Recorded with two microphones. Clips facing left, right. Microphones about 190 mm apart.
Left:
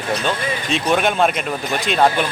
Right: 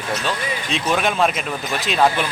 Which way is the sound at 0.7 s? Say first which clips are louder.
Left 3 dB; centre (ahead or behind).